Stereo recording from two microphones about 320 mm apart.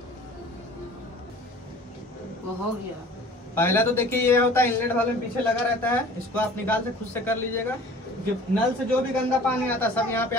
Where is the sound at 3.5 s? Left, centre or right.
Centre.